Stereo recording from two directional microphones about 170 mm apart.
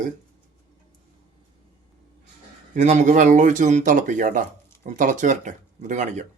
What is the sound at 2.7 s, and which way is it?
Speech, 45° right (ahead or behind).